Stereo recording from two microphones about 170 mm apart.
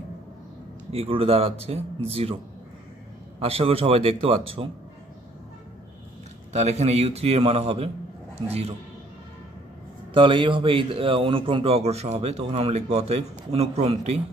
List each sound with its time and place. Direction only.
0.9 s a man's voice: 35° right (ahead or behind)
3.3 s a man's voice: 35° right (ahead or behind)
6.5 s a man's voice: 40° right (ahead or behind)
10.1 s a man's voice: 30° right (ahead or behind)